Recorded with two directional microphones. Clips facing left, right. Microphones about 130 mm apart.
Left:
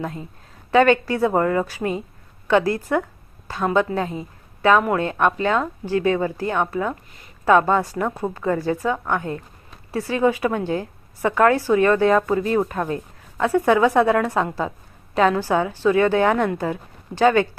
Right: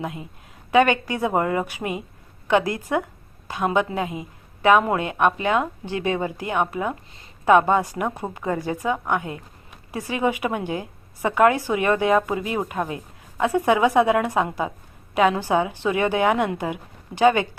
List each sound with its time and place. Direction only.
0.7 s a woman's voice: 15° right (ahead or behind)